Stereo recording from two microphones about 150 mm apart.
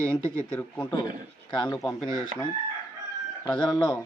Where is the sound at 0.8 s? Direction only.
30° left (ahead or behind).